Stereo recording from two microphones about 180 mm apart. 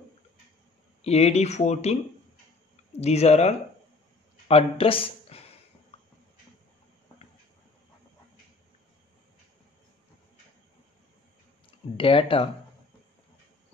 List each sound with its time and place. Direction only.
1.0 s speech: 35° left (ahead or behind)
3.0 s speech: 35° left (ahead or behind)
12.0 s speech: 30° left (ahead or behind)